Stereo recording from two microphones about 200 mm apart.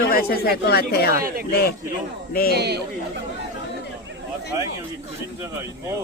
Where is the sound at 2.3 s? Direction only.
45° left (ahead or behind).